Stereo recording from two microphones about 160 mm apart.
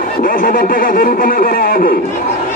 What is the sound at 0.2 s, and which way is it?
Speech, 60° left (ahead or behind).